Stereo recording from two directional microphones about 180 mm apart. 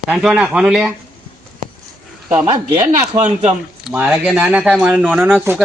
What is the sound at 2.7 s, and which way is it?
Speech, 15° right (ahead or behind).